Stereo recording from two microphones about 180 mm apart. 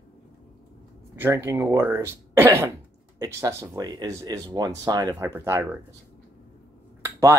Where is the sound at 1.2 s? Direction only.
15° right (ahead or behind).